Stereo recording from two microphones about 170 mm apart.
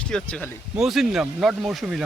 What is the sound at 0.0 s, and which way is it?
Speech, 5° left (ahead or behind).